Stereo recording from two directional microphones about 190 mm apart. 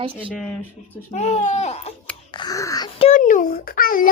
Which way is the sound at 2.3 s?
20° left (ahead or behind).